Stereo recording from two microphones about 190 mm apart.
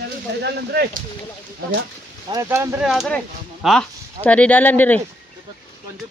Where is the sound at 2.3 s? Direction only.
15° right (ahead or behind).